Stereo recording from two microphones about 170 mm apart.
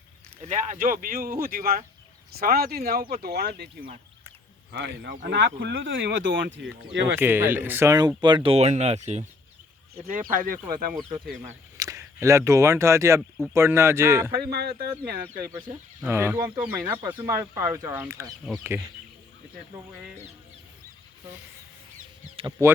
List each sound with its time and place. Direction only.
0.4 s speech: 45° right (ahead or behind); by 3.7 s 70° right (ahead or behind)
4.7 s speech: 90° right
7.2 s speech: 10° right (ahead or behind); by 9.2 s 40° right (ahead or behind)
9.9 s speech: 60° right (ahead or behind)
11.8 s speech: 15° right (ahead or behind)
14.4 s speech: 70° right (ahead or behind)
16.0 s speech: 15° right (ahead or behind)
22.6 s speech: 15° right (ahead or behind)